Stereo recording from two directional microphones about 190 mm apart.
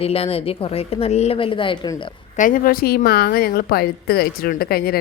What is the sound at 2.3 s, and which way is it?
A woman's voice, 45° left (ahead or behind).